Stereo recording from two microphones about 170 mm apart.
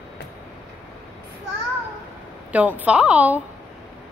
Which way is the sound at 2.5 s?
10° right (ahead or behind).